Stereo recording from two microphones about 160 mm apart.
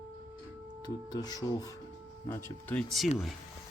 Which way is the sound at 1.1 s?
25° left (ahead or behind).